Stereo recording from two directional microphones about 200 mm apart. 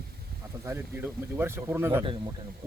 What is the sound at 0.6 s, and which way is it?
Speech, 10° right (ahead or behind).